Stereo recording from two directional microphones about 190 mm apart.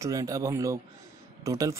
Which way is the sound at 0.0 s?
20° right (ahead or behind).